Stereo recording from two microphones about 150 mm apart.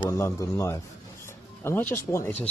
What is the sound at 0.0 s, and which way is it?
Speech, 20° left (ahead or behind).